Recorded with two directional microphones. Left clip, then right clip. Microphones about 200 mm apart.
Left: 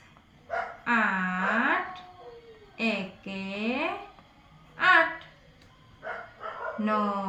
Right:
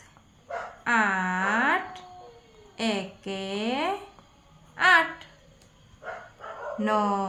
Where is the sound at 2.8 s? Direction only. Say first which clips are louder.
Right 1 dB; 45° right (ahead or behind).